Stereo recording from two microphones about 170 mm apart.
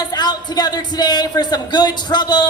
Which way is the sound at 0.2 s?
25° left (ahead or behind).